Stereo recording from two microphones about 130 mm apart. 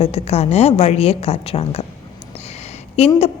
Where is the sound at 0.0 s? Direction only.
55° left (ahead or behind).